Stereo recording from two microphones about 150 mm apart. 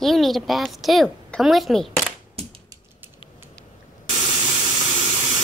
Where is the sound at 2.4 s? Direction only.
40° right (ahead or behind).